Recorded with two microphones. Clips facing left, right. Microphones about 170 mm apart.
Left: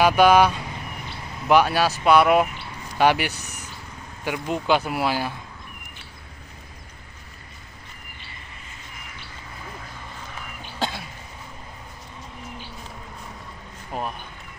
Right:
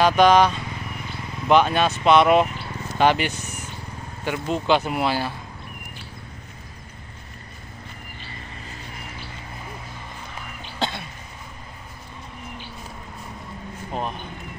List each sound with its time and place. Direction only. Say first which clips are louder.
0.0 s speech: even; 10° left (ahead or behind)
3.3 s speech: right 4 dB; 35° left (ahead or behind)
4.2 s speech: right 1 dB; 10° left (ahead or behind)
10.6 s cough: right 1 dB; 5° left (ahead or behind)
13.9 s a sound: right 1 dB; 10° left (ahead or behind)